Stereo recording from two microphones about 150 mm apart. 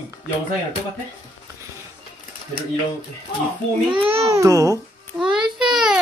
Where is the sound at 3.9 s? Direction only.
40° right (ahead or behind).